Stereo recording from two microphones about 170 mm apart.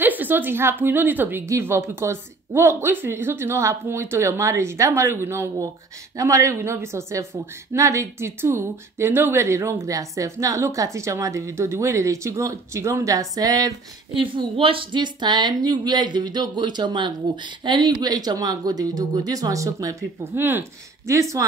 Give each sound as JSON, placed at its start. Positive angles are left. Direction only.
{"t": 0.0, "sound": "a woman's voice", "side_deg": -10}